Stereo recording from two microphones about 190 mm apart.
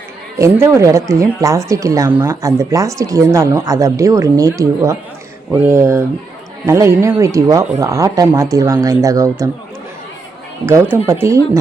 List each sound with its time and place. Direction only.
0.3 s speech: 15° right (ahead or behind)
10.7 s speech: 10° right (ahead or behind)